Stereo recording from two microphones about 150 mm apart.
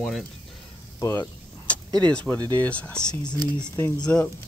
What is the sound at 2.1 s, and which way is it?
Speech, 5° left (ahead or behind).